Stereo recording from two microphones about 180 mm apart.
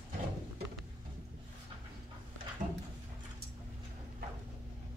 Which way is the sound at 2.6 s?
45° right (ahead or behind).